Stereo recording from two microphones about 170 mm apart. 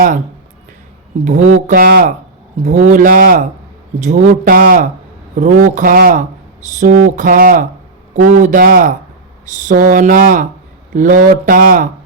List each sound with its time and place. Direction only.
1.2 s speech: 45° right (ahead or behind)
2.6 s speech: 45° right (ahead or behind)